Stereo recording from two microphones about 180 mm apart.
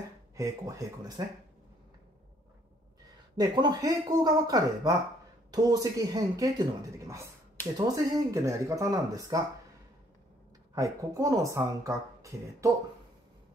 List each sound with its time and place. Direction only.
0.4 s speech: 20° right (ahead or behind)
3.3 s speech: 25° right (ahead or behind)
10.7 s speech: 20° right (ahead or behind)